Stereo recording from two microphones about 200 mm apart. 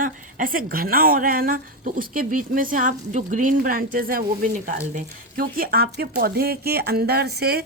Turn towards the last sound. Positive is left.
turn(degrees=-50)  # may be behind; listen again after turning